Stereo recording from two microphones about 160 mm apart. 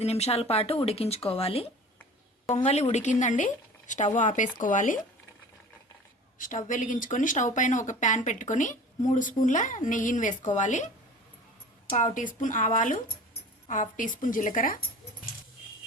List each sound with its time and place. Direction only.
0.0 s speech: 40° left (ahead or behind)
6.4 s speech: 55° left (ahead or behind)
11.9 s a woman's voice: 50° left (ahead or behind)